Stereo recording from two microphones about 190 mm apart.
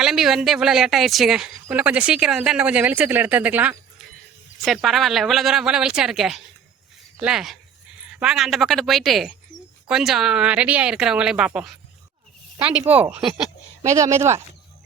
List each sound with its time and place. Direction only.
0.0 s speech: centre (ahead or behind)